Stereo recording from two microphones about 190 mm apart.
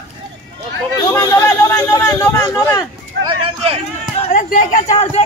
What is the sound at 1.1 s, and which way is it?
A man's voice, 15° left (ahead or behind).